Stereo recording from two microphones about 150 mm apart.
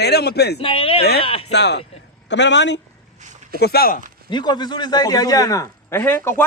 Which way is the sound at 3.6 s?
90° left.